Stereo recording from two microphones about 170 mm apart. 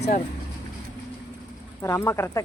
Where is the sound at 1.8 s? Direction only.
15° left (ahead or behind).